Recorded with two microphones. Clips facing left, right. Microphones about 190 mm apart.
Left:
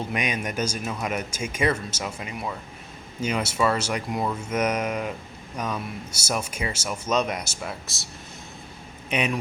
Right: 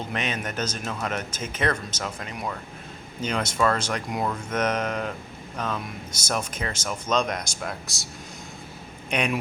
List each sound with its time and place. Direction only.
0.1 s speech: 10° left (ahead or behind)
9.0 s speech: 5° left (ahead or behind)